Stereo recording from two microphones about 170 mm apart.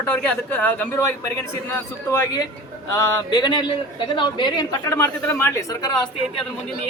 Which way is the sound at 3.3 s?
25° left (ahead or behind).